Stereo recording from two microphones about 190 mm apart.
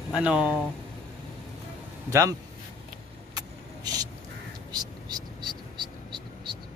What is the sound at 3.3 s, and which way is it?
Vehicle, 20° right (ahead or behind).